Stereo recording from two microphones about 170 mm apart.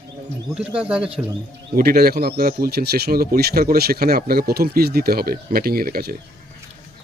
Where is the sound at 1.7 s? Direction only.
60° right (ahead or behind).